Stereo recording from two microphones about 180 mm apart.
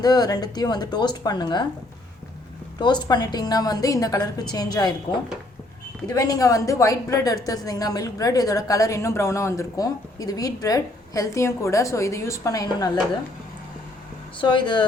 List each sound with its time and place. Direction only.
0.0 s a woman's voice: 20° left (ahead or behind)
2.8 s a woman's voice: 25° left (ahead or behind)
14.3 s a woman's voice: 25° left (ahead or behind)